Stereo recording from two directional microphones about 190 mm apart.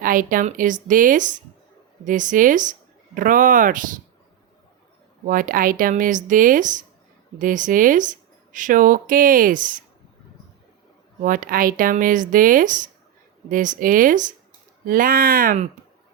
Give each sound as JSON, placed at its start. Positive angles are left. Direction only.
{"t": 0.0, "sound": "speech", "side_deg": -45}
{"t": 5.2, "sound": "speech", "side_deg": -45}
{"t": 11.2, "sound": "speech", "side_deg": -45}